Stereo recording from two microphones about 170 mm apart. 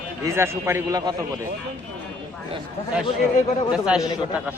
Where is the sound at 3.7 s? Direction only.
5° right (ahead or behind).